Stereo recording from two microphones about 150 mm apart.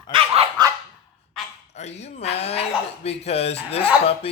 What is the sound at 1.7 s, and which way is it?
Speech, 45° left (ahead or behind).